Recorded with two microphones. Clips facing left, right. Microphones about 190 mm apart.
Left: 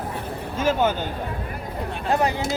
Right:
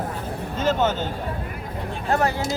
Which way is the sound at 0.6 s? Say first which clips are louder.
Left 1 dB; 10° left (ahead or behind).